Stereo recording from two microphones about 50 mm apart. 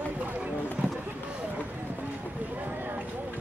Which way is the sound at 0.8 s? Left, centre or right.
Right.